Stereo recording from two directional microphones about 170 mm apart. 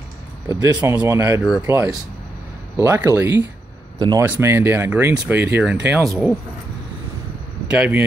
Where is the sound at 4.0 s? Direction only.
25° right (ahead or behind).